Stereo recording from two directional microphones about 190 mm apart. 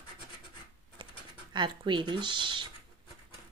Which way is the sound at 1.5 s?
25° right (ahead or behind).